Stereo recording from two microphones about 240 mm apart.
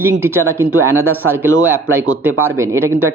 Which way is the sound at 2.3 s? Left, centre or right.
Right.